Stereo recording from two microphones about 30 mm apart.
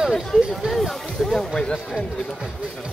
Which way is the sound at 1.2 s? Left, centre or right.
Left.